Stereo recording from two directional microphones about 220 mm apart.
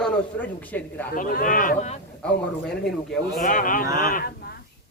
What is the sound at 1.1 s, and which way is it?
Speech, 40° left (ahead or behind).